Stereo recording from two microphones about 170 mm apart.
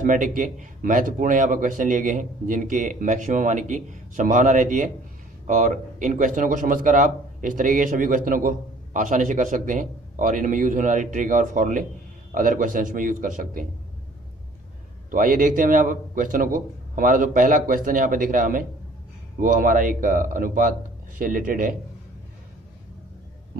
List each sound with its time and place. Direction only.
0.0 s a man's voice: 50° right (ahead or behind)
15.0 s a man's voice: 50° right (ahead or behind)
23.5 s heart sounds: 60° right (ahead or behind)